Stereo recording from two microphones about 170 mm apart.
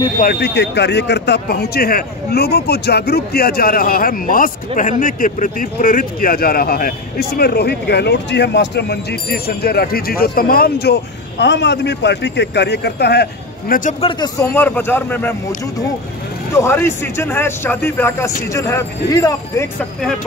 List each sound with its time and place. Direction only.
0.2 s speech: 65° left (ahead or behind)
14.0 s speech: 20° left (ahead or behind)